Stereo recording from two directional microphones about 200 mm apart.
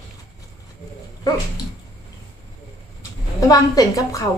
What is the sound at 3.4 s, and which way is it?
Speech, 15° left (ahead or behind).